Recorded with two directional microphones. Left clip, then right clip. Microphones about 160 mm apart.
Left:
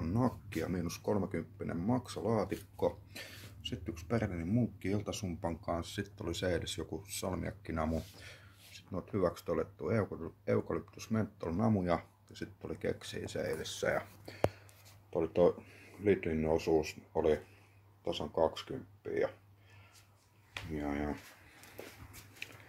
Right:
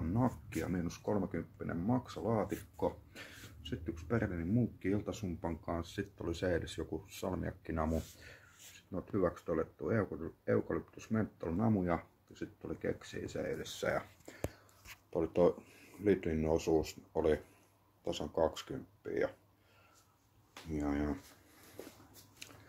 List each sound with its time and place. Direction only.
0.0 s speech: 15° left (ahead or behind)
13.6 s speech: 5° left (ahead or behind)
15.0 s speech: centre (ahead or behind)
20.7 s speech: centre (ahead or behind)
22.4 s a sound: 5° right (ahead or behind)